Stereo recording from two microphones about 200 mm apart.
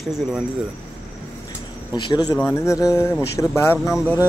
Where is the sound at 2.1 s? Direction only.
20° left (ahead or behind).